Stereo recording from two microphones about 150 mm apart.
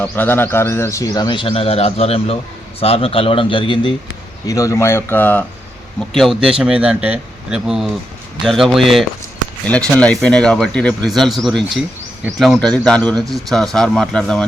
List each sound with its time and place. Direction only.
0.0 s speech: 10° left (ahead or behind); by 3.9 s 35° left (ahead or behind)
4.4 s speech: 20° left (ahead or behind)
6.0 s speech: centre (ahead or behind)